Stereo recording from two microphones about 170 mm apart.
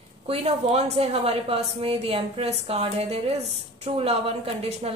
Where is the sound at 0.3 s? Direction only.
40° right (ahead or behind).